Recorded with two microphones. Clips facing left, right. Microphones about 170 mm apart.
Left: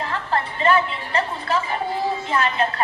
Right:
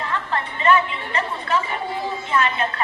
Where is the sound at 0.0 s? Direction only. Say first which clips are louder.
Left 1 dB; 35° left (ahead or behind).